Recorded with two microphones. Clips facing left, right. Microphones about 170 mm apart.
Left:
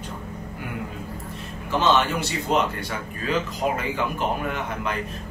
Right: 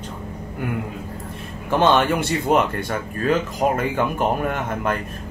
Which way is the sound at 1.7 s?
55° right (ahead or behind).